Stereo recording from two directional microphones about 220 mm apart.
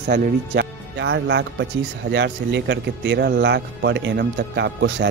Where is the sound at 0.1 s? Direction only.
50° right (ahead or behind).